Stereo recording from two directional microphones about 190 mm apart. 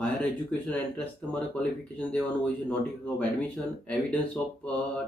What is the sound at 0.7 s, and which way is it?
Speech, 5° left (ahead or behind).